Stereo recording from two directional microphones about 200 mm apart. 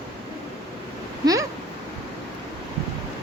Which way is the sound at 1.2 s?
15° right (ahead or behind).